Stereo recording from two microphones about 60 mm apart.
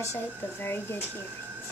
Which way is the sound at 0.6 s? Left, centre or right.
Left.